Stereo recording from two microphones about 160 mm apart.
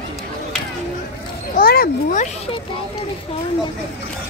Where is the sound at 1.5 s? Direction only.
70° left (ahead or behind).